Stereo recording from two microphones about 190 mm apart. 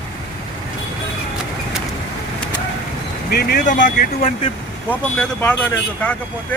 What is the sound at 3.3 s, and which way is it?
Speech, 55° left (ahead or behind).